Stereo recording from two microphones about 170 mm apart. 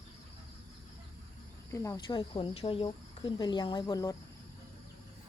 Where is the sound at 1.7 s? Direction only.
20° left (ahead or behind).